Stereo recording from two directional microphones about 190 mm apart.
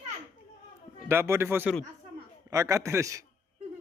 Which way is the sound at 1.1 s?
10° right (ahead or behind).